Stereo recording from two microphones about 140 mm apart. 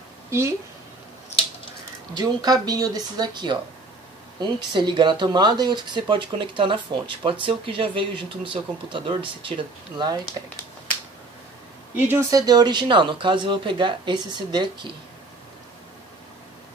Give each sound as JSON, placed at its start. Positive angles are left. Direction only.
{"t": 0.3, "sound": "a woman's voice", "side_deg": -20}
{"t": 2.1, "sound": "speech", "side_deg": -30}
{"t": 12.1, "sound": "speech", "side_deg": -20}